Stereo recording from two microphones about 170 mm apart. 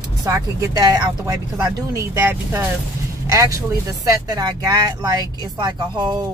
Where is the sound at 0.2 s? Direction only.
20° right (ahead or behind).